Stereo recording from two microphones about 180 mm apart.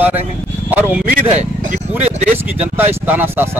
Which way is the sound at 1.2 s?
40° right (ahead or behind).